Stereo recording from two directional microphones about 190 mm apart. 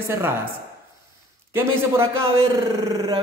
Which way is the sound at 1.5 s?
15° right (ahead or behind).